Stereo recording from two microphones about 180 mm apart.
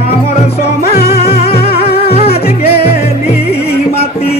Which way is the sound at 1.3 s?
35° left (ahead or behind).